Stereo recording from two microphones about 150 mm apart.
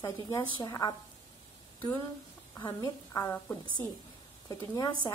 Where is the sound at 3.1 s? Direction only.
20° left (ahead or behind).